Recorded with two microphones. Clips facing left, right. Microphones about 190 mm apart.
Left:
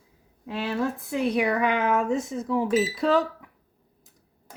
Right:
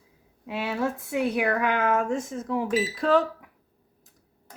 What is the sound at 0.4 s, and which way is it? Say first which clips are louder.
Speech: left 1 dB; 5° right (ahead or behind).